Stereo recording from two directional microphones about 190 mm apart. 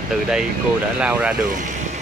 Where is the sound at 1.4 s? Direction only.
40° right (ahead or behind).